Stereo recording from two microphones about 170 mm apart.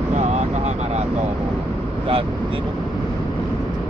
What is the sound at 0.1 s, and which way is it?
Vehicle, 40° right (ahead or behind).